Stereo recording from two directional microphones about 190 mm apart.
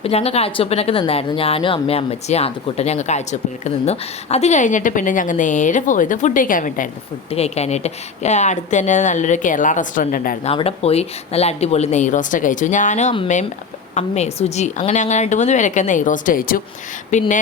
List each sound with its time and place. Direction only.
0.0 s speech: 30° left (ahead or behind)
7.3 s speech: 35° left (ahead or behind)
10.4 s speech: 30° left (ahead or behind)